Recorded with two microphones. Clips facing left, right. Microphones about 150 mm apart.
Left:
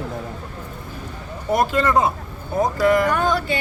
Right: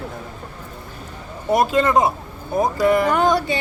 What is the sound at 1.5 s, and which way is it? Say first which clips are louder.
A woman's voice: right 2 dB; 20° right (ahead or behind).